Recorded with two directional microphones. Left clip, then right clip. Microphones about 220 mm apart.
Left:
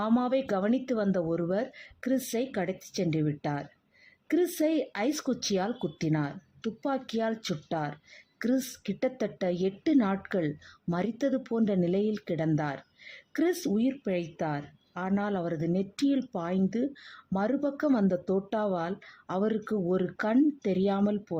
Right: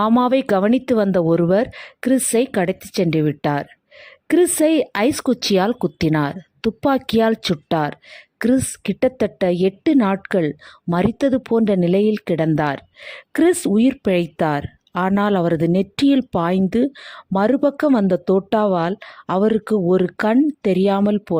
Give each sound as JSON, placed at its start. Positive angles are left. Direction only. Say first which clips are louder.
{"t": 0.0, "sound": "speech", "louder": "right 12 dB", "side_deg": -40}